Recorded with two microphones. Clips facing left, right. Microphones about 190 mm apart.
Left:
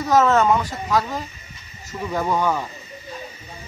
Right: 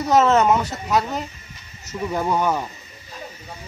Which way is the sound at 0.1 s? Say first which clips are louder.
Even; 20° right (ahead or behind).